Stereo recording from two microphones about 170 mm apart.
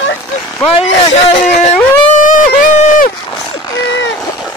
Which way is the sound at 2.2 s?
50° left (ahead or behind).